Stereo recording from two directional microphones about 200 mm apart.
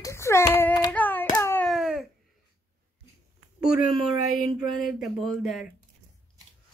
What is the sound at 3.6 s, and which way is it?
Speech, centre (ahead or behind).